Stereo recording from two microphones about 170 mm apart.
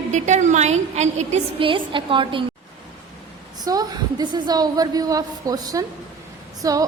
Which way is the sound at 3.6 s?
20° right (ahead or behind).